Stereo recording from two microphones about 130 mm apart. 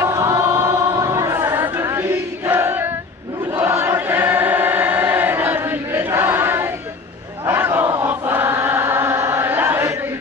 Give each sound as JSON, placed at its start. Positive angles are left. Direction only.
{"t": 0.0, "sound": "choir", "side_deg": -25}
{"t": 7.4, "sound": "chant", "side_deg": -15}